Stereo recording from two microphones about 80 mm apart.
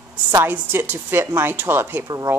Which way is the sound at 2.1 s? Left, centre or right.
Right.